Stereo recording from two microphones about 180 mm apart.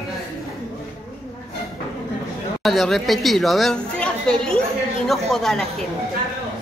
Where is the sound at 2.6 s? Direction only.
Centre (ahead or behind).